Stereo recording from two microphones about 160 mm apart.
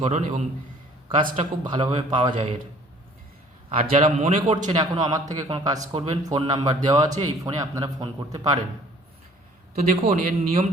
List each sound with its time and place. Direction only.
0.0 s speech: 45° right (ahead or behind)
1.4 s a man's voice: 30° right (ahead or behind)
3.7 s speech: 35° right (ahead or behind)
4.4 s a man's voice: 30° right (ahead or behind)
9.9 s speech: 45° right (ahead or behind)